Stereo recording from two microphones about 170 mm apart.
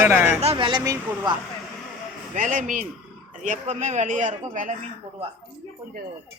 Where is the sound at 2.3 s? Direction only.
50° right (ahead or behind).